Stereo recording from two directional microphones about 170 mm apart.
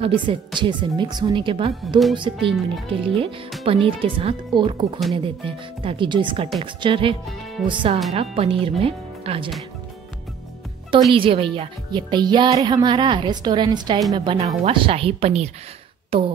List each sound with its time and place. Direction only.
0.0 s speech: 30° right (ahead or behind)
11.1 s speech: 30° right (ahead or behind)
14.4 s speech: 40° right (ahead or behind)